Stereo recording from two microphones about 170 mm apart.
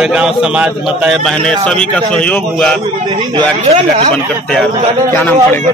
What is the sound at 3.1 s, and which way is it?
Speech, 25° right (ahead or behind).